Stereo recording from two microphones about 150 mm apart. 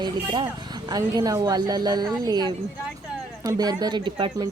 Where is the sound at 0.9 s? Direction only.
25° right (ahead or behind).